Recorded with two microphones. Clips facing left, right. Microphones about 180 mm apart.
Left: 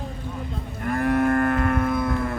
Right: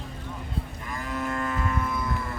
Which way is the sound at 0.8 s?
60° left (ahead or behind).